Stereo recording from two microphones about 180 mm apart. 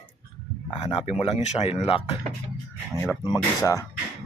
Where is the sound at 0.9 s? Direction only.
35° left (ahead or behind).